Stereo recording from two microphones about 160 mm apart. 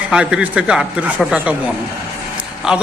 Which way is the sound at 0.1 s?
5° right (ahead or behind).